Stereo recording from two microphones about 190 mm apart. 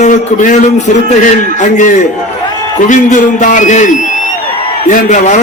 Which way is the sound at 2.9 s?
40° left (ahead or behind).